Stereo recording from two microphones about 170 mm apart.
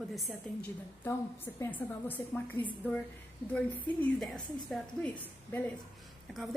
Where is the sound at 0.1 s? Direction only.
Centre (ahead or behind).